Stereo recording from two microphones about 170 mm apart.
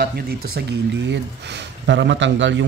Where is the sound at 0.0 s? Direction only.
65° right (ahead or behind).